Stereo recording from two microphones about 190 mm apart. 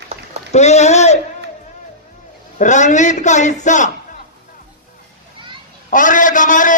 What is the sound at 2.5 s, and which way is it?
A man's voice, 40° left (ahead or behind).